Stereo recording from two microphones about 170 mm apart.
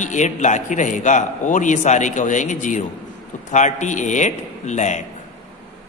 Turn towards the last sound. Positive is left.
turn(degrees=45)  # may be behind; listen again after turning